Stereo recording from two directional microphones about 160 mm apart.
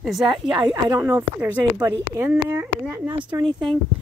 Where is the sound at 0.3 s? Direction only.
30° right (ahead or behind).